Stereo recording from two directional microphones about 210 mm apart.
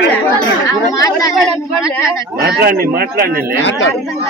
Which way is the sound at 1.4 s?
Centre (ahead or behind).